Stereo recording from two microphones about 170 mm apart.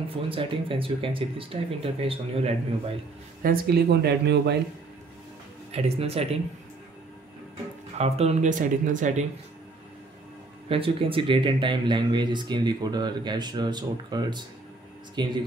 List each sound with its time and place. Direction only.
0.1 s speech: 30° right (ahead or behind)
3.4 s speech: 65° right (ahead or behind)
5.7 s speech: 35° right (ahead or behind)
8.0 s speech: 40° right (ahead or behind)
10.7 s speech: 35° right (ahead or behind)